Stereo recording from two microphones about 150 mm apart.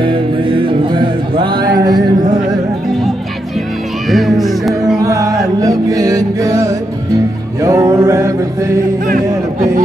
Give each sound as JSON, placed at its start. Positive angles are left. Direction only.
{"t": 0.0, "sound": "music", "side_deg": -35}
{"t": 4.1, "sound": "music", "side_deg": 0}
{"t": 4.9, "sound": "music", "side_deg": -20}
{"t": 7.6, "sound": "mantra", "side_deg": -20}
{"t": 9.0, "sound": "music", "side_deg": -65}